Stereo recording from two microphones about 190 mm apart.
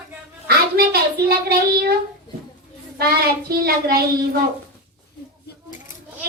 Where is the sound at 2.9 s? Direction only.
55° right (ahead or behind).